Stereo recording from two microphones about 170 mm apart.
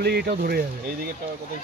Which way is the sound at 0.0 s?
70° right (ahead or behind).